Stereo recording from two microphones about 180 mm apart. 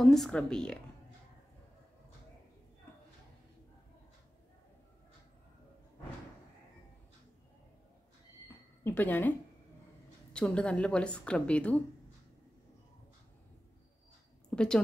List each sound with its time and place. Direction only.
0.0 s a woman's voice: centre (ahead or behind)
8.8 s speech: 10° left (ahead or behind)
10.3 s a woman's voice: 5° left (ahead or behind)
14.5 s a woman's voice: 5° left (ahead or behind)